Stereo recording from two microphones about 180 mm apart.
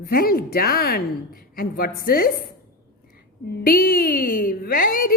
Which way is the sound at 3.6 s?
55° left (ahead or behind).